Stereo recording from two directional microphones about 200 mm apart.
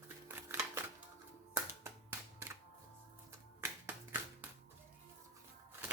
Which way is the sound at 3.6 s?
15° right (ahead or behind).